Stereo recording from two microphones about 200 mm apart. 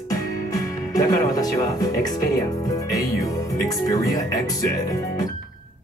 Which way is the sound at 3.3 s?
15° left (ahead or behind).